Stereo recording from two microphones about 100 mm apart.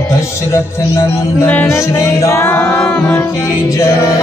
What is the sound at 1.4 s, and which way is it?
Music, 15° left (ahead or behind).